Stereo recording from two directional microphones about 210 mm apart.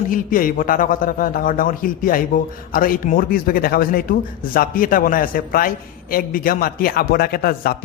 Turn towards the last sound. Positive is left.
turn(degrees=45)  # may be behind; listen again after turning